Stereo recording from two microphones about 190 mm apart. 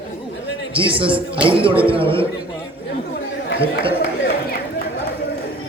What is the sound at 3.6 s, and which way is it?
Speech, 30° right (ahead or behind).